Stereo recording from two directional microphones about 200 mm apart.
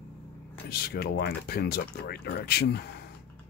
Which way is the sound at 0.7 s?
50° left (ahead or behind).